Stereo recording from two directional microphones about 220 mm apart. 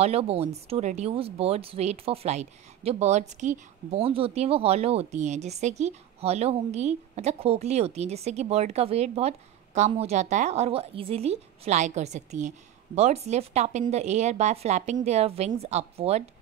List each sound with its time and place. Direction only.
0.0 s a woman's voice: 25° right (ahead or behind)